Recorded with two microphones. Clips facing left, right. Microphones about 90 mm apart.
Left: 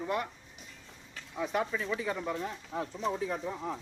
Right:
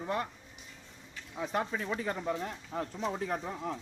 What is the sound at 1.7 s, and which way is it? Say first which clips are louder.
Speech: left 1 dB; 40° right (ahead or behind).